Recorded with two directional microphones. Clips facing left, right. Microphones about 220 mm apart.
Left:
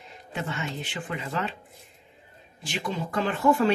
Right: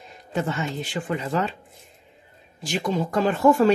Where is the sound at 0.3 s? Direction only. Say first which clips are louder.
Right 6 dB; 40° right (ahead or behind).